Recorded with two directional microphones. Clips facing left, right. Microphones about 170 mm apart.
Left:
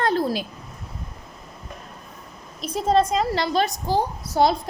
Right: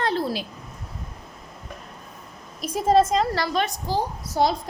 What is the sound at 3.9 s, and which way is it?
Speech, 65° left (ahead or behind).